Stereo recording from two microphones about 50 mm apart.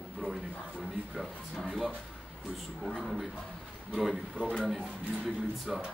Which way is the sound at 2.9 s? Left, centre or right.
Centre.